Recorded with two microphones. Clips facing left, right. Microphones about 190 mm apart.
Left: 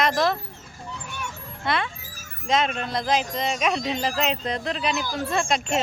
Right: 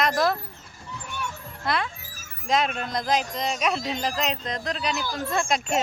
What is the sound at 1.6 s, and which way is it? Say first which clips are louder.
A child's voice: left 1 dB; centre (ahead or behind).